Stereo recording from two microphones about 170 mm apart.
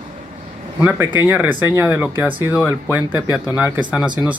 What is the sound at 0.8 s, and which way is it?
Speech, 15° right (ahead or behind).